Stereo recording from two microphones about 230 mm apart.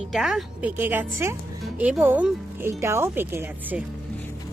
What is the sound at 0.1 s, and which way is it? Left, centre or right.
Speech, centre.